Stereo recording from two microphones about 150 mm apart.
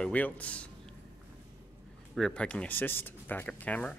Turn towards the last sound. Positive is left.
turn(degrees=10)  # may be behind; listen again after turning